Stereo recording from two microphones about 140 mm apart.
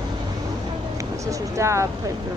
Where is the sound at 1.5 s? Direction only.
20° right (ahead or behind).